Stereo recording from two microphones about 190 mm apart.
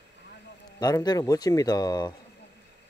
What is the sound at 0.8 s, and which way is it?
Speech, 20° left (ahead or behind).